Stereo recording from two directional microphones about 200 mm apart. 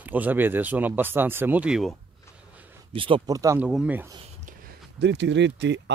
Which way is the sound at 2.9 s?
25° right (ahead or behind).